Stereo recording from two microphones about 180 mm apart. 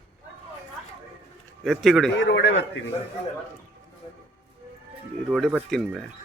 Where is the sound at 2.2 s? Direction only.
85° left.